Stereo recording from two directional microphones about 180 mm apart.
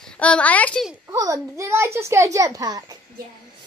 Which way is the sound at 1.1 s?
20° right (ahead or behind).